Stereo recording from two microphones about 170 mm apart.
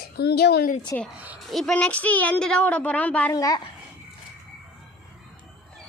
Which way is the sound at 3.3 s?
20° left (ahead or behind).